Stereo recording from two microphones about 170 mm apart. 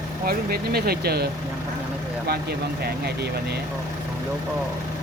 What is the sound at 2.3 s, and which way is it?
Speech, 70° right (ahead or behind).